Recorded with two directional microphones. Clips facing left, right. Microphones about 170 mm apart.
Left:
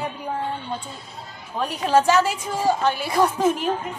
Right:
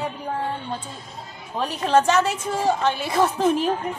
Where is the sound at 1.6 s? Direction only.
Centre (ahead or behind).